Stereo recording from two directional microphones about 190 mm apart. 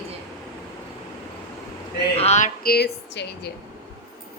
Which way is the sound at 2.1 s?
35° left (ahead or behind).